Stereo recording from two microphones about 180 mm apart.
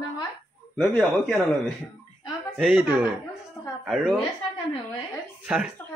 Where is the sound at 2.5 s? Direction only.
5° right (ahead or behind).